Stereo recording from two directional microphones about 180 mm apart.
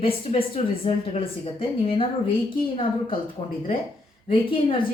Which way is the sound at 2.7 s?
30° left (ahead or behind).